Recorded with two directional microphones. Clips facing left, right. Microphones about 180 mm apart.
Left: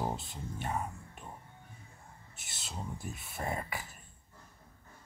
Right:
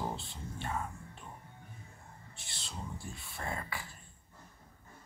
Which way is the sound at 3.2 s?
20° left (ahead or behind).